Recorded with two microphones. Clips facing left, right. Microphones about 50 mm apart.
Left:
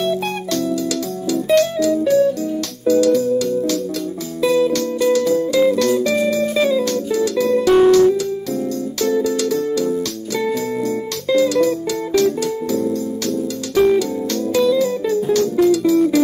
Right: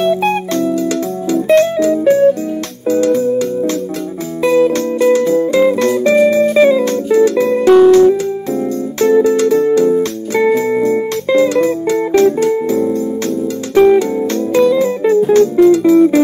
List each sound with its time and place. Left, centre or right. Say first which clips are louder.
0.0 s music: right 7 dB; right